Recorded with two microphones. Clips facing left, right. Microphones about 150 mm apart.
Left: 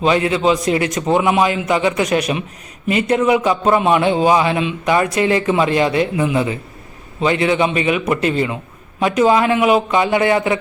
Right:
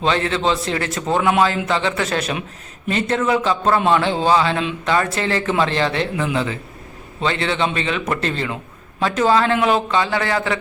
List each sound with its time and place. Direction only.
0.0 s a man's voice: 10° left (ahead or behind)